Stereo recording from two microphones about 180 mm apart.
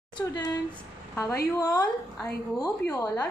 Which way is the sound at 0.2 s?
20° left (ahead or behind).